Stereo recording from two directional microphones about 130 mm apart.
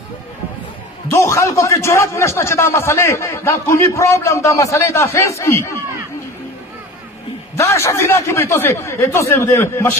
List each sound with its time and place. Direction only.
1.1 s a man's voice: 20° left (ahead or behind)
7.5 s a man's voice: 20° left (ahead or behind)